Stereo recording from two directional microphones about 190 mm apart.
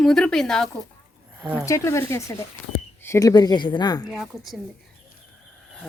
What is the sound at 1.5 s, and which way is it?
Speech, 15° left (ahead or behind).